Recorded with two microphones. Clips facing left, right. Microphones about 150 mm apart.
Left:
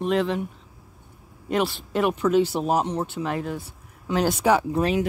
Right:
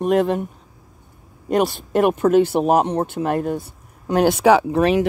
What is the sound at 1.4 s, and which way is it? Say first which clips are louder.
Speech: right 5 dB; 45° right (ahead or behind).